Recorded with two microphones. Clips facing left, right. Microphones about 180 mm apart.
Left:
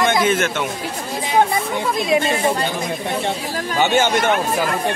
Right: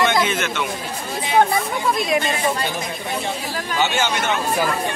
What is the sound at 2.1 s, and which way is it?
Speech, 25° left (ahead or behind).